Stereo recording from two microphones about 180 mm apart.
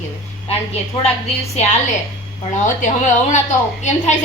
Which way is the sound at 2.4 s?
40° left (ahead or behind).